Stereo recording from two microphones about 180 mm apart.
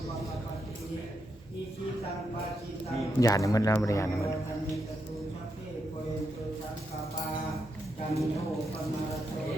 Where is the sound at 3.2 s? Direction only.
20° left (ahead or behind).